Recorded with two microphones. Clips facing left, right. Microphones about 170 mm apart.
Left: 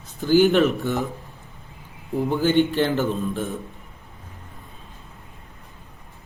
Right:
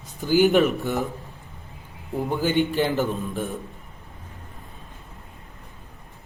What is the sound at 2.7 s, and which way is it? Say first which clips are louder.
Speech: left 1 dB; 5° right (ahead or behind).